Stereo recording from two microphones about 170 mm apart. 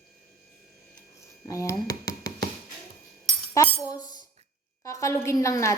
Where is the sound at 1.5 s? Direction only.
20° left (ahead or behind).